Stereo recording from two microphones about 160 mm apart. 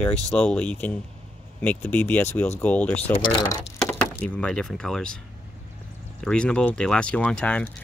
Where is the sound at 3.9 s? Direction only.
10° left (ahead or behind).